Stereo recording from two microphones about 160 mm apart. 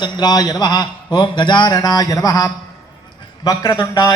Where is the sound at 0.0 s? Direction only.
25° left (ahead or behind).